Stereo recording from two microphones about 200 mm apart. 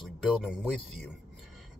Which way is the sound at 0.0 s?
Centre (ahead or behind).